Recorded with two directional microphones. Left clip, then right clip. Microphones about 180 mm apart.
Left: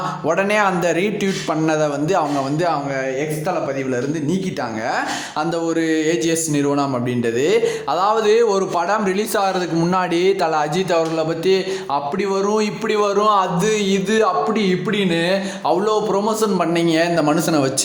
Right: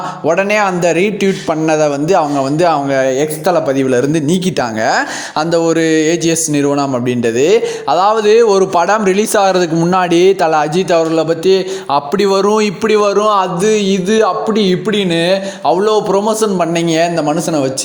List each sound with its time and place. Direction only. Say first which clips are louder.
0.3 s a man's voice: right 5 dB; 25° right (ahead or behind); by 4.4 s 45° right (ahead or behind)
4.9 s a man's voice: right 7 dB; 35° right (ahead or behind)
11.9 s a man's voice: right 10 dB; 45° right (ahead or behind); by 17.7 s 15° right (ahead or behind)